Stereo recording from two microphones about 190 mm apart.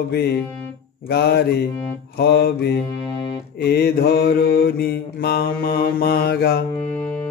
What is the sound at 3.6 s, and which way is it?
Mantra, 55° left (ahead or behind).